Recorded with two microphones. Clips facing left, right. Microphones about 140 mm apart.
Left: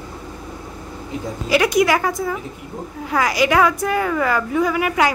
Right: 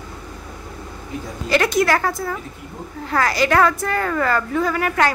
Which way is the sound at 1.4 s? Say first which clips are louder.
Left 2 dB; 10° left (ahead or behind).